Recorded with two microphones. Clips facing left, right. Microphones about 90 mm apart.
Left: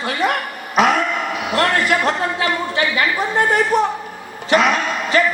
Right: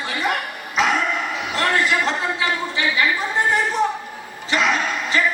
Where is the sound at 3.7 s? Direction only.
60° left (ahead or behind).